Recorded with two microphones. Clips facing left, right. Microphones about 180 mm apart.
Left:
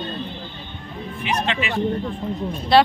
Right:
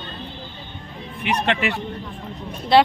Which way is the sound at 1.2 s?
60° right (ahead or behind).